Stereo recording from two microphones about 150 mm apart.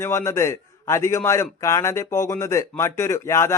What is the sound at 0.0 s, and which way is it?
Speech, 20° left (ahead or behind).